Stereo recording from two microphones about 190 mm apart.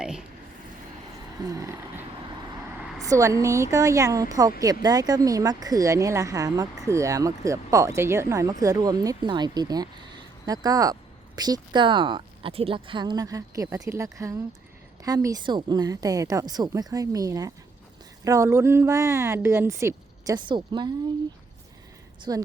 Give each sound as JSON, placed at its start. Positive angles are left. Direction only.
{"t": 0.0, "sound": "a sound", "side_deg": -5}
{"t": 1.5, "sound": "vehicle", "side_deg": -15}
{"t": 3.0, "sound": "speech", "side_deg": -15}
{"t": 22.3, "sound": "speech", "side_deg": -20}